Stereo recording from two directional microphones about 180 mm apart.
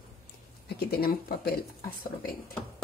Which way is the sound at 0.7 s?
60° left (ahead or behind).